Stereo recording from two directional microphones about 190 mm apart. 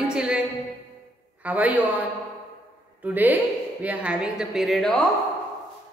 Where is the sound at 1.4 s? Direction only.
10° right (ahead or behind).